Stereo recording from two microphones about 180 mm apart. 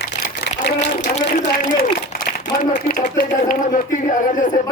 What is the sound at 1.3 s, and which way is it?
A man's voice, 50° left (ahead or behind).